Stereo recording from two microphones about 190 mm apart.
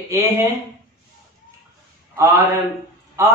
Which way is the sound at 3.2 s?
15° right (ahead or behind).